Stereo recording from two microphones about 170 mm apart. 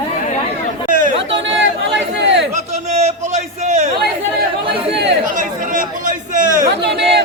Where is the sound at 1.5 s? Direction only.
90° right.